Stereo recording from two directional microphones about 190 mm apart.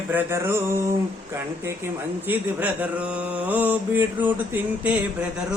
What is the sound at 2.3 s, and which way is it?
Mantra, 10° right (ahead or behind).